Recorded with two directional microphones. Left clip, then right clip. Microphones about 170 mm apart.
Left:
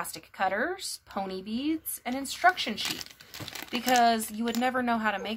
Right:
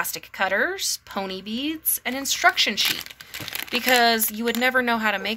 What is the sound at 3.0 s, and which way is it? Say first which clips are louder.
Crumpling: right 7 dB; 5° right (ahead or behind).